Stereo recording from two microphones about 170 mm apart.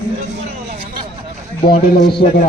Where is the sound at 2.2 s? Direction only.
50° left (ahead or behind).